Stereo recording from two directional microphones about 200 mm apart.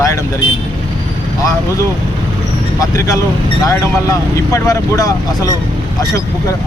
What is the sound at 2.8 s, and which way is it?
Speech, 15° left (ahead or behind).